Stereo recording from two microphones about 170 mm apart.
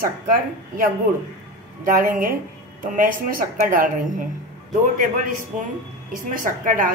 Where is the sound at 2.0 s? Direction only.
55° right (ahead or behind).